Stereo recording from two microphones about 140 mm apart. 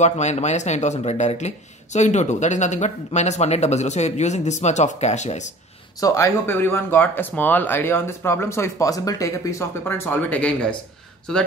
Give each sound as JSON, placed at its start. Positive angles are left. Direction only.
{"t": 0.0, "sound": "speech", "side_deg": 55}
{"t": 5.9, "sound": "speech", "side_deg": 25}